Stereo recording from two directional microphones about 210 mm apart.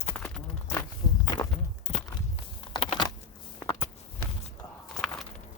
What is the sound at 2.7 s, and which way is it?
Computer keyboard, 25° left (ahead or behind).